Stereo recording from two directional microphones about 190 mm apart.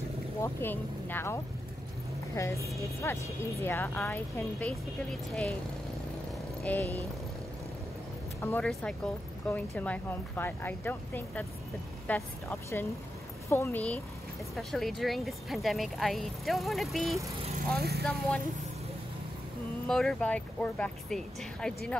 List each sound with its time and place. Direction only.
0.4 s speech: 10° left (ahead or behind)
6.6 s speech: 10° left (ahead or behind)
8.4 s speech: 10° left (ahead or behind)
17.7 s speech: 55° right (ahead or behind)
19.9 s speech: centre (ahead or behind)